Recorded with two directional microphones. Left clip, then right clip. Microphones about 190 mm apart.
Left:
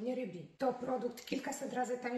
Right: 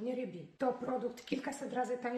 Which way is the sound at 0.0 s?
20° right (ahead or behind).